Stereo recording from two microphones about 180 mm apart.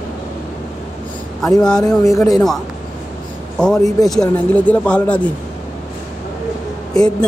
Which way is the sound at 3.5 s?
5° left (ahead or behind).